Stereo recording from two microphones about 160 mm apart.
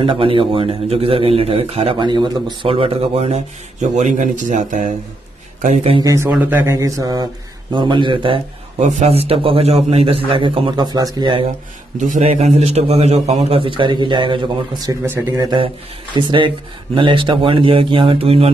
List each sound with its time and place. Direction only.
0.0 s a man's voice: 35° right (ahead or behind)
5.9 s a man's voice: 20° right (ahead or behind)
12.0 s a man's voice: 45° right (ahead or behind); by 15.0 s 30° right (ahead or behind)
15.0 s speech: 15° right (ahead or behind)
15.4 s a man's voice: 30° right (ahead or behind)